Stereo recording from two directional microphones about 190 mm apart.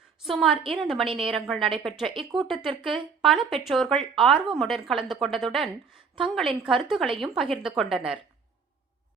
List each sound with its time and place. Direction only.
0.3 s a woman's voice: centre (ahead or behind)
0.5 s a woman's voice: 30° right (ahead or behind)
0.8 s a woman's voice: centre (ahead or behind)
1.0 s a woman's voice: 30° right (ahead or behind)
1.3 s a woman's voice: centre (ahead or behind)